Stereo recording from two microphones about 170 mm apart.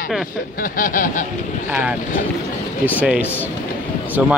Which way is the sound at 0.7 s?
50° left (ahead or behind).